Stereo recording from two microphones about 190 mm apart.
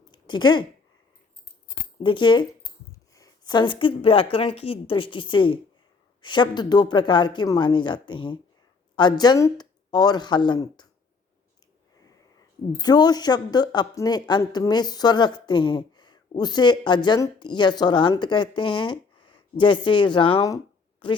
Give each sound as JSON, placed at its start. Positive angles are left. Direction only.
{"t": 0.1, "sound": "a sound", "side_deg": 25}
{"t": 2.0, "sound": "speech", "side_deg": 25}
{"t": 12.8, "sound": "speech", "side_deg": 20}